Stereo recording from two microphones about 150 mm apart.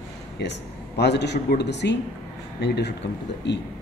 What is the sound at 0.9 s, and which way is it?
Speech, 90° left.